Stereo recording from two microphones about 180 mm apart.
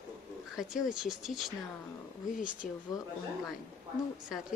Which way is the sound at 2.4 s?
45° left (ahead or behind).